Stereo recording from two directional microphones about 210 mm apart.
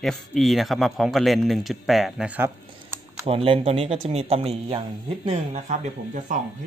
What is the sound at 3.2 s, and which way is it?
Speech, 25° right (ahead or behind).